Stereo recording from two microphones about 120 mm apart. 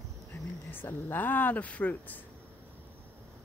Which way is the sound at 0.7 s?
20° left (ahead or behind).